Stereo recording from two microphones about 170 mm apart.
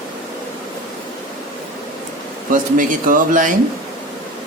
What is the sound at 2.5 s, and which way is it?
A man's voice, 50° right (ahead or behind).